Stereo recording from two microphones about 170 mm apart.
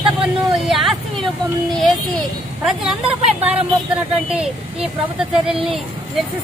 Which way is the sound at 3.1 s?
35° right (ahead or behind).